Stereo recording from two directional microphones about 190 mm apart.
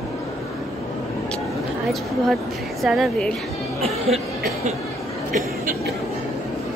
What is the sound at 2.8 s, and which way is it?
Speech, centre (ahead or behind).